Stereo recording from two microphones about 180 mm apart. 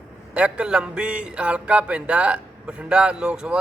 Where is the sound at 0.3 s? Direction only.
5° right (ahead or behind).